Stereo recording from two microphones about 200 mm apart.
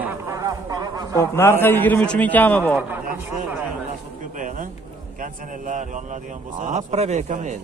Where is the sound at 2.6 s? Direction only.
10° right (ahead or behind).